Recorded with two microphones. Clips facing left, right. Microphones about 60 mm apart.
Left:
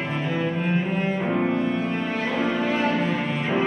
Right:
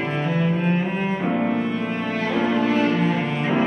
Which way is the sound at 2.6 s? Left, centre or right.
Centre.